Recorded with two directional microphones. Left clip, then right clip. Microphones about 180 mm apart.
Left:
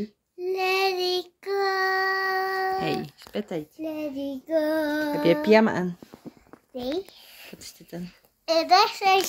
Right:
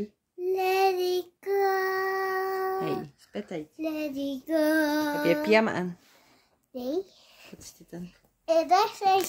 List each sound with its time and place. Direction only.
0.0 s child singing: 25° right (ahead or behind); by 2.8 s 40° right (ahead or behind)
2.8 s speech: 15° left (ahead or behind)
3.8 s child singing: 20° right (ahead or behind)
5.2 s speech: 25° left (ahead or behind)
6.7 s a sound: 35° right (ahead or behind)
7.9 s speech: 25° left (ahead or behind)
8.5 s a child's voice: 10° right (ahead or behind)